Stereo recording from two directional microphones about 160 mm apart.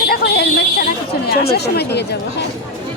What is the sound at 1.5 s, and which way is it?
Speech, 90° left.